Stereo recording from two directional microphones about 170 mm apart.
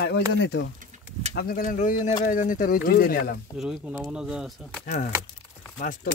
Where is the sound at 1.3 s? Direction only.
60° left (ahead or behind).